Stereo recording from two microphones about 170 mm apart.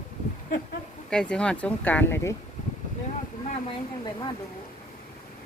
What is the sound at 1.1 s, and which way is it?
Speech, 5° left (ahead or behind).